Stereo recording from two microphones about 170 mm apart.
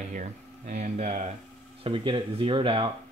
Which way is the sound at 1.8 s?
30° right (ahead or behind).